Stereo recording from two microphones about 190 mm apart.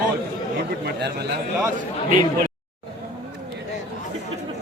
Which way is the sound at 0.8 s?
60° right (ahead or behind).